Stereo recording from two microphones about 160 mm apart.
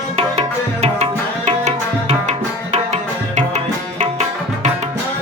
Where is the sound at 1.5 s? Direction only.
45° right (ahead or behind).